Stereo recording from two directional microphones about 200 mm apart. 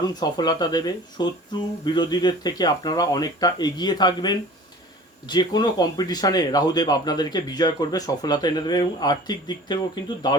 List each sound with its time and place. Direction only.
0.0 s speech: 20° left (ahead or behind)